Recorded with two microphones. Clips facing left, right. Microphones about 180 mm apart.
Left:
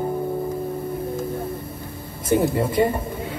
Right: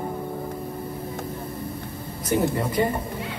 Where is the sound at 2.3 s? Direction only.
25° left (ahead or behind).